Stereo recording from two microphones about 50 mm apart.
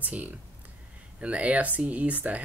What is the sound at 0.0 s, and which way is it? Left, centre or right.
Speech, right.